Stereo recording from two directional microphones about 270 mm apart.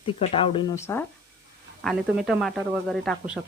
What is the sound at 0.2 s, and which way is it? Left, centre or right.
Speech, centre.